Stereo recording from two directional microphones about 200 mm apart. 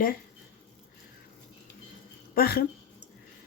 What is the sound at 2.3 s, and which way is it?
Speech, 50° left (ahead or behind).